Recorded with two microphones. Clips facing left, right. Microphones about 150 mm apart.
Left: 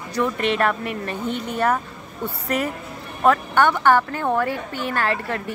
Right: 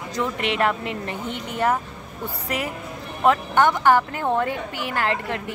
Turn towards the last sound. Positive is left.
turn(degrees=-20)  # may be behind; listen again after turning